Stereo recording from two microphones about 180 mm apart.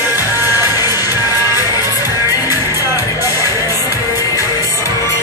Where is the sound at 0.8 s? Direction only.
20° left (ahead or behind).